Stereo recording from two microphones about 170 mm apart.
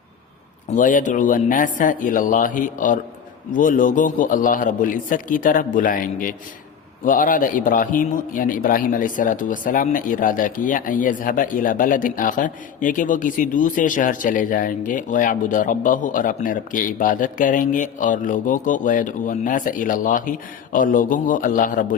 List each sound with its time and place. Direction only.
0.8 s a man's voice: 50° left (ahead or behind)